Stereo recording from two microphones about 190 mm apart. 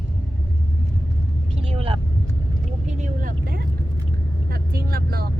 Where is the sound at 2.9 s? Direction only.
40° right (ahead or behind).